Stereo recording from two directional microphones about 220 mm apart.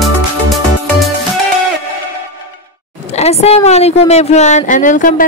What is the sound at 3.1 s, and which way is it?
A woman's voice, 30° left (ahead or behind).